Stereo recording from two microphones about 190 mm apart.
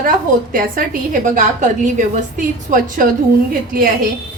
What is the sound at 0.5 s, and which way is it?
A woman's voice, 45° right (ahead or behind).